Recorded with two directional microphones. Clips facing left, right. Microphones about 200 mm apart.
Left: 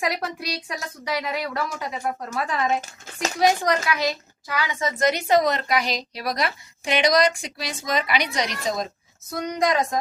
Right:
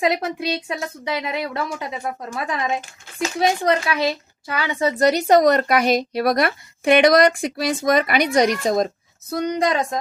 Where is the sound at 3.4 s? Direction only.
25° right (ahead or behind); by 8.8 s 50° right (ahead or behind).